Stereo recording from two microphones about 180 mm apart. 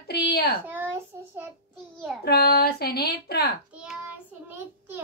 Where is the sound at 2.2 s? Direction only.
65° left (ahead or behind).